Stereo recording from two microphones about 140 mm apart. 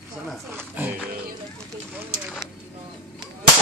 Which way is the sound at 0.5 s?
15° right (ahead or behind).